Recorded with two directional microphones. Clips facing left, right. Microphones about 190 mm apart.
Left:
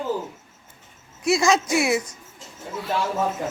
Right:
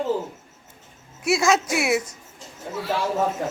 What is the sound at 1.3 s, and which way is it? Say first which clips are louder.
Speech: left 1 dB; 5° right (ahead or behind).